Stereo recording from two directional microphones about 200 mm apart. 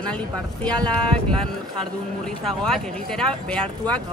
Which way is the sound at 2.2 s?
5° left (ahead or behind).